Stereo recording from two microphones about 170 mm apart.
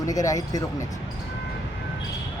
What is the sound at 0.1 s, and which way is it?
Speech, 20° left (ahead or behind).